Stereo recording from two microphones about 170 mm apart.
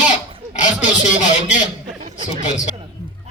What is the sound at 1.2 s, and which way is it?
Speech, 45° left (ahead or behind).